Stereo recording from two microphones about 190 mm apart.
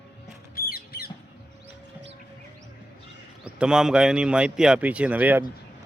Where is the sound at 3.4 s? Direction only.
5° right (ahead or behind).